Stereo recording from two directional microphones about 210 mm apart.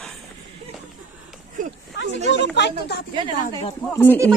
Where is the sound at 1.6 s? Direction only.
40° right (ahead or behind).